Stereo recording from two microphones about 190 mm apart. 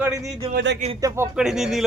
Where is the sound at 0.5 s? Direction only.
65° right (ahead or behind).